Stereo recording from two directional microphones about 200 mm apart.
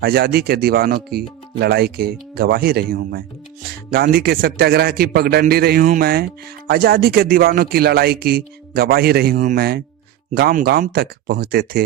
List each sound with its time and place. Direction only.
0.0 s speech: 50° right (ahead or behind)